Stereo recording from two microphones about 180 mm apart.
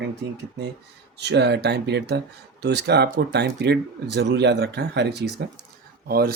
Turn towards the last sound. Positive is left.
turn(degrees=-55)  # may be behind; listen again after turning